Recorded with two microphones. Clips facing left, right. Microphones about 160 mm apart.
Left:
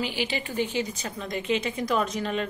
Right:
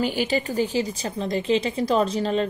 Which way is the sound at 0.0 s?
45° right (ahead or behind).